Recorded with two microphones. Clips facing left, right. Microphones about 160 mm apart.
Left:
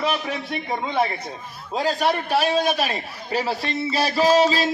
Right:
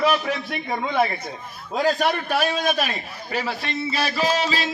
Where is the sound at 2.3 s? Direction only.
30° left (ahead or behind).